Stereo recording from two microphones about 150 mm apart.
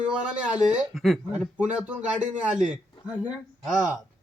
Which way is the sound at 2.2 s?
55° right (ahead or behind).